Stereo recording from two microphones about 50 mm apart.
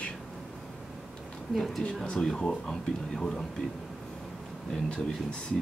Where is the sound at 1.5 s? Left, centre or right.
Centre.